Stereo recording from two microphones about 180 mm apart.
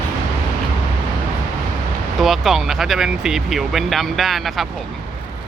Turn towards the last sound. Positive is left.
turn(degrees=0)  # may be behind; listen again after turning